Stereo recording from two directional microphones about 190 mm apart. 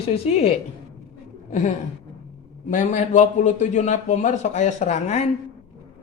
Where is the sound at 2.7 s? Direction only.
40° left (ahead or behind).